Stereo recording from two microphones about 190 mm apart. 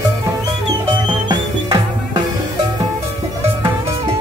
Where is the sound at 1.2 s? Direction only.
20° right (ahead or behind).